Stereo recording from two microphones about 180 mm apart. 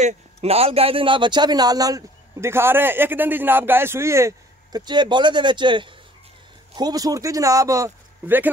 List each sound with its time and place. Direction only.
0.0 s speech: 35° right (ahead or behind); by 8.5 s 15° right (ahead or behind)